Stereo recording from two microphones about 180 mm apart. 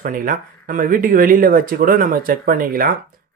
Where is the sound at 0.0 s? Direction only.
50° right (ahead or behind).